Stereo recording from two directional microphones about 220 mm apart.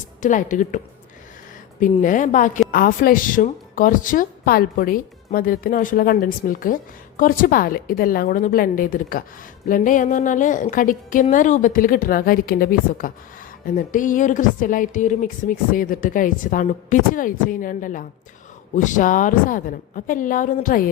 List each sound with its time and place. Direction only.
0.2 s speech: 35° left (ahead or behind)
1.8 s speech: 35° left (ahead or behind)